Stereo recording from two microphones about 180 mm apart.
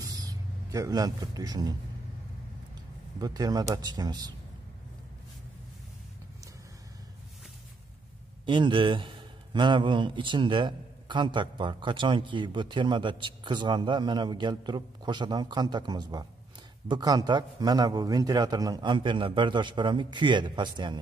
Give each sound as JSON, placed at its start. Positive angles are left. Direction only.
{"t": 0.1, "sound": "speech", "side_deg": -20}
{"t": 3.2, "sound": "a man's voice", "side_deg": -20}
{"t": 8.5, "sound": "a man's voice", "side_deg": -25}